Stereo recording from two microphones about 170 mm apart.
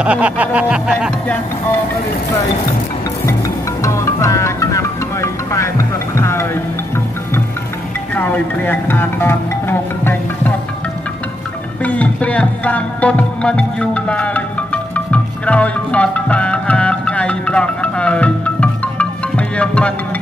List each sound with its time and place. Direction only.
0.0 s music: 10° right (ahead or behind)
3.3 s music: 20° left (ahead or behind)
8.1 s music: 10° left (ahead or behind)
11.8 s music: 10° left (ahead or behind)